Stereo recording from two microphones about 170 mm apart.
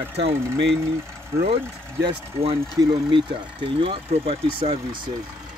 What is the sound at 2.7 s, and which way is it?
Speech, 20° right (ahead or behind).